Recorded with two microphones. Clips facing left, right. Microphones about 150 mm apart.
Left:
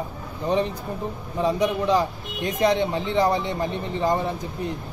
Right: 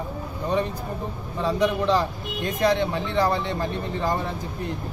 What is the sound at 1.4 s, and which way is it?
A man's voice, 15° left (ahead or behind).